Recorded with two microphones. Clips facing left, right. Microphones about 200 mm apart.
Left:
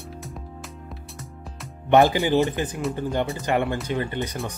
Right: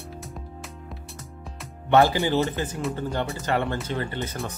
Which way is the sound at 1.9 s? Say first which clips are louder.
Left 2 dB; 20° left (ahead or behind).